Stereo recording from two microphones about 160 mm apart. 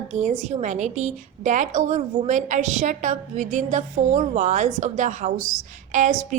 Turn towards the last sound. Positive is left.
turn(degrees=-50)  # may be behind; listen again after turning